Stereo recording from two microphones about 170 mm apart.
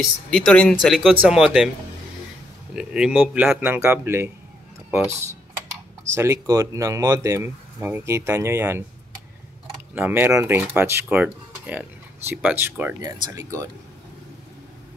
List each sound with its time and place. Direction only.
0.0 s speech: 5° left (ahead or behind)
2.7 s speech: 5° right (ahead or behind)
9.9 s speech: 10° right (ahead or behind)